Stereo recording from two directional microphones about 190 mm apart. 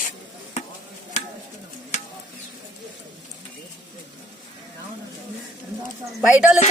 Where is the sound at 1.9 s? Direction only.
40° left (ahead or behind).